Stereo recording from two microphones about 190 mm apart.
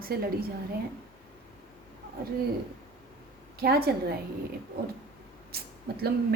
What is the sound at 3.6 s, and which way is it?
Speech, 55° right (ahead or behind).